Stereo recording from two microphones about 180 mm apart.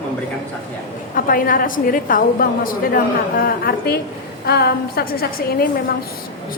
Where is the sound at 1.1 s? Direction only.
50° left (ahead or behind).